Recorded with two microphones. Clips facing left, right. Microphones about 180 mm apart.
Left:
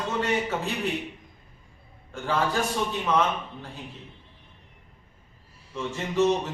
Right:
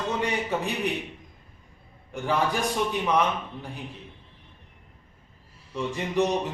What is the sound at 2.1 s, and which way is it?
A man's voice, 15° right (ahead or behind).